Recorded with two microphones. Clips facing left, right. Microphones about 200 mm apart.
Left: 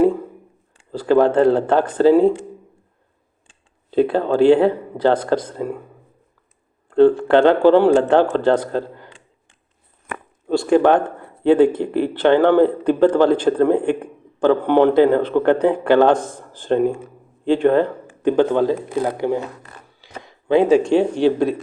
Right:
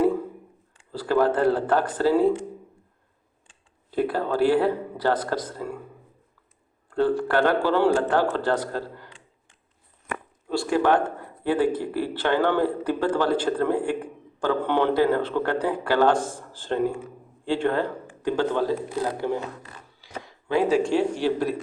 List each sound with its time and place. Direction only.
0.9 s speech: 20° left (ahead or behind)
3.9 s speech: 25° left (ahead or behind)
6.9 s speech: 25° left (ahead or behind)
10.5 s a man's voice: 25° left (ahead or behind)
18.9 s speech: 55° left (ahead or behind)
19.1 s speech: 15° left (ahead or behind)